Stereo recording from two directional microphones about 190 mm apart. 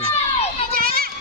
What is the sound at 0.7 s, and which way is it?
Children playing, 50° right (ahead or behind).